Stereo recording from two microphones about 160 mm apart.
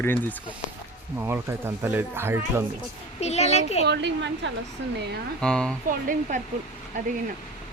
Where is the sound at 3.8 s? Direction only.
90° right.